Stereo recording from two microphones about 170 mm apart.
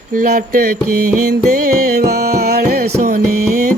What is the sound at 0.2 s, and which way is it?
Music, 55° right (ahead or behind).